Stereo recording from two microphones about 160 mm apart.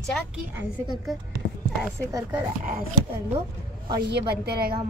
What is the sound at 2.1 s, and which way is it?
Speech, 20° right (ahead or behind).